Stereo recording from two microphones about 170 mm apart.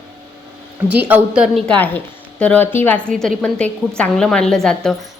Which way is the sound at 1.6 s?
10° left (ahead or behind).